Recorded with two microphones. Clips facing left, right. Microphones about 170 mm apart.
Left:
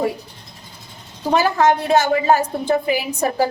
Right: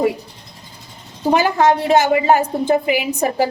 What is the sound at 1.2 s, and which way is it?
A woman's voice, 20° right (ahead or behind).